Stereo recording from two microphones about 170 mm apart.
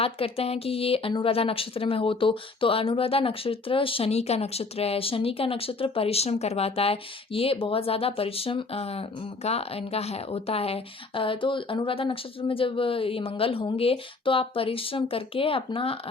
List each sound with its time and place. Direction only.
0.0 s speech: 35° left (ahead or behind)